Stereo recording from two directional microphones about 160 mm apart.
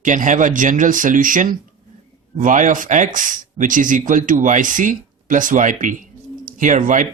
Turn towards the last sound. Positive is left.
turn(degrees=-55)  # may be behind; listen again after turning